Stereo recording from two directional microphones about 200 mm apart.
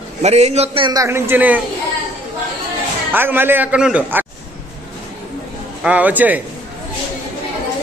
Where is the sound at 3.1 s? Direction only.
10° right (ahead or behind).